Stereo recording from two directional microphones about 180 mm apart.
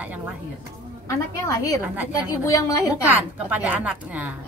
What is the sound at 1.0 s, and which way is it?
A woman's voice, 15° left (ahead or behind).